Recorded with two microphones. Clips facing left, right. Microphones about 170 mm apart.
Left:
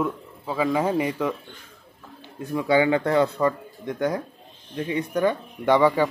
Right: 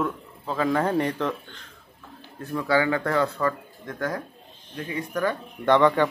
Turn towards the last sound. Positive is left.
turn(degrees=10)  # may be behind; listen again after turning